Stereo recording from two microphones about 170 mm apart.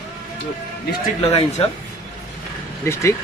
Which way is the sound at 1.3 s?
35° left (ahead or behind).